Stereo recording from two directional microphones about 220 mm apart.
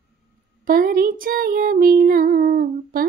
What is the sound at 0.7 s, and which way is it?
Female singing, 40° right (ahead or behind).